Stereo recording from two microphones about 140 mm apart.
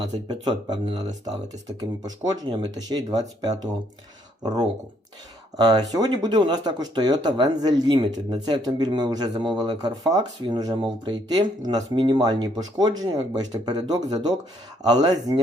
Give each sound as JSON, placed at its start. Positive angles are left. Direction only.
{"t": 0.3, "sound": "speech", "side_deg": -30}
{"t": 5.5, "sound": "speech", "side_deg": -30}